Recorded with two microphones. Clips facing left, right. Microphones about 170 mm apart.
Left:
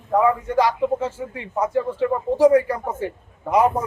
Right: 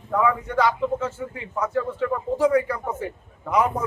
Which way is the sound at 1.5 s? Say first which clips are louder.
Left 3 dB; 30° left (ahead or behind).